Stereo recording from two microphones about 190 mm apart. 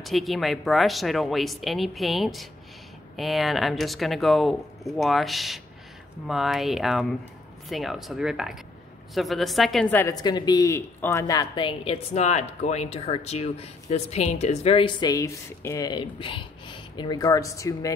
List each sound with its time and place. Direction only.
0.0 s a woman's voice: centre (ahead or behind); by 17.9 s 15° left (ahead or behind)